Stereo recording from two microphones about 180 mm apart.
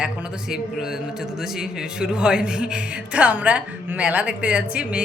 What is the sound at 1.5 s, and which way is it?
A woman's voice, 5° right (ahead or behind).